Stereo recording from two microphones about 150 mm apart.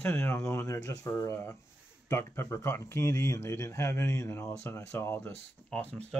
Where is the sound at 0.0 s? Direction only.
15° left (ahead or behind).